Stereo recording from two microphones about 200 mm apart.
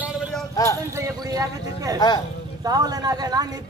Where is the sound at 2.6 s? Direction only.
20° right (ahead or behind).